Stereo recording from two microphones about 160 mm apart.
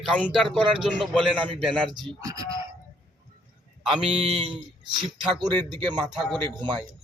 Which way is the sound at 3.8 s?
Centre (ahead or behind).